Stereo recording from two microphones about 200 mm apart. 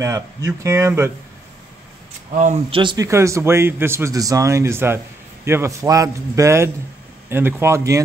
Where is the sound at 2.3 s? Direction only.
35° right (ahead or behind).